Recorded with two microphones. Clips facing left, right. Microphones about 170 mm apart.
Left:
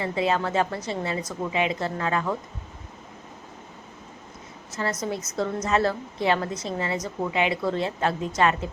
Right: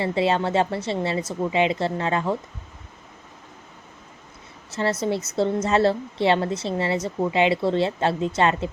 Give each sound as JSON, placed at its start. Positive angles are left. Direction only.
{"t": 0.0, "sound": "a woman's voice", "side_deg": -30}
{"t": 4.7, "sound": "a woman's voice", "side_deg": -30}